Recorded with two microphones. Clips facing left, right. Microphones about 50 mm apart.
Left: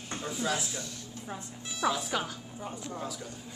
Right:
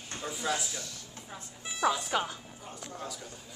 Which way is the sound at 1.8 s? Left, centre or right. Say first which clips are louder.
Right 1 dB; centre.